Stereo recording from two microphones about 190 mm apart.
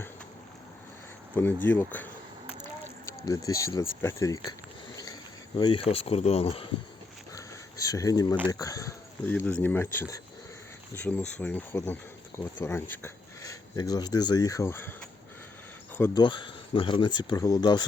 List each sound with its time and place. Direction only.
1.4 s speech: 10° left (ahead or behind)
3.1 s speech: 15° left (ahead or behind)
5.5 s speech: 25° left (ahead or behind)
7.3 s a sound: 15° left (ahead or behind)
8.4 s speech: 20° left (ahead or behind)
11.3 s speech: 10° left (ahead or behind)
16.0 s speech: 10° left (ahead or behind)
16.2 s speech: 25° left (ahead or behind)